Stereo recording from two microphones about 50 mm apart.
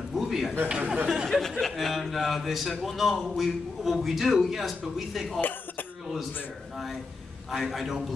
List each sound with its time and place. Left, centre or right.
0.1 s a sound: centre
0.7 s speech: centre
1.0 s speech: centre
7.5 s speech: centre